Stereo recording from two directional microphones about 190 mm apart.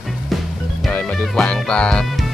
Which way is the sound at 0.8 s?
5° left (ahead or behind).